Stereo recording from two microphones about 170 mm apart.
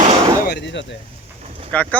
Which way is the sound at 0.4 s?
80° left.